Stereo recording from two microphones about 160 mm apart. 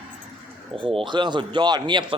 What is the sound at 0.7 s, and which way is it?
A man's voice, 35° right (ahead or behind).